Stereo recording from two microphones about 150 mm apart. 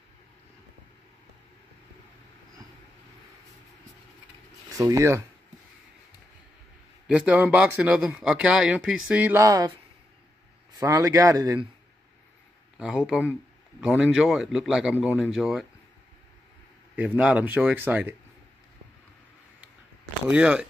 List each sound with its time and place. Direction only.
4.7 s a man's voice: 20° right (ahead or behind)
7.1 s speech: 5° right (ahead or behind)
10.8 s a man's voice: 25° right (ahead or behind)
12.7 s speech: 5° right (ahead or behind)
16.9 s speech: 10° right (ahead or behind)
20.2 s speech: 5° right (ahead or behind)